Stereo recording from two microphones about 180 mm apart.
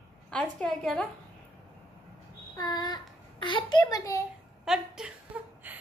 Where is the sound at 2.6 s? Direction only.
20° left (ahead or behind).